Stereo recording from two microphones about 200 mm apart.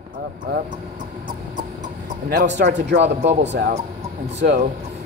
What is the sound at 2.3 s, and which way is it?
Speech, 55° right (ahead or behind).